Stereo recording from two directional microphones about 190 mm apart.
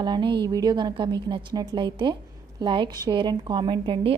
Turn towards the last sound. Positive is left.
turn(degrees=-25)  # may be behind; listen again after turning